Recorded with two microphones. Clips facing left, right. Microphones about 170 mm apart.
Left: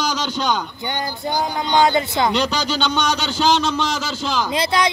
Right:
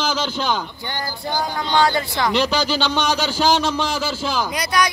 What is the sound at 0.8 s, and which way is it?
Speech, 20° left (ahead or behind).